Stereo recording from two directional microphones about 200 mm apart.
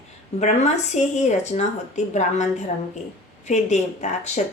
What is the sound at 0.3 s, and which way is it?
Speech, 35° left (ahead or behind).